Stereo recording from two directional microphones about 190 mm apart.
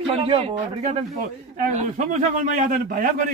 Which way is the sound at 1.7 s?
40° right (ahead or behind).